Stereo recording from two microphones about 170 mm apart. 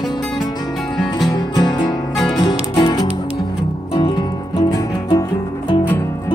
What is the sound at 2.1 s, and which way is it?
Music, centre (ahead or behind).